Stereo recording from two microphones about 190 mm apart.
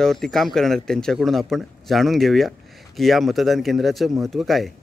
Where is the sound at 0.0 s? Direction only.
Centre (ahead or behind).